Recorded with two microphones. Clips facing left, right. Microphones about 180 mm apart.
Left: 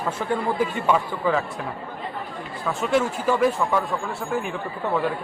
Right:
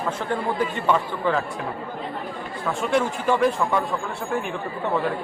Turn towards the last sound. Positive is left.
turn(degrees=5)  # may be behind; listen again after turning